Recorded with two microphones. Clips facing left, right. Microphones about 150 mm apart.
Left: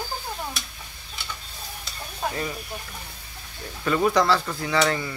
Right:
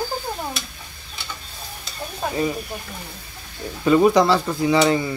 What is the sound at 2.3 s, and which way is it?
Speech, 20° right (ahead or behind).